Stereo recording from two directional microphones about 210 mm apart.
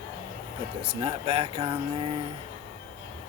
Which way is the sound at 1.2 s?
30° right (ahead or behind).